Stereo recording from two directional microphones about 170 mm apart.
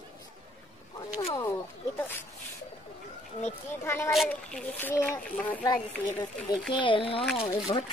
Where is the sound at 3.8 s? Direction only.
15° left (ahead or behind).